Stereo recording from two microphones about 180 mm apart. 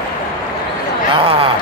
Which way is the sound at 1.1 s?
30° right (ahead or behind).